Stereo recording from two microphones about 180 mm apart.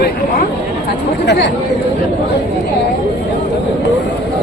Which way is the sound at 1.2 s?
70° left (ahead or behind).